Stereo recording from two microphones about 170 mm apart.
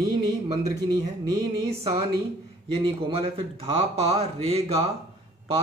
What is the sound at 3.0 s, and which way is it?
Speech, 35° right (ahead or behind).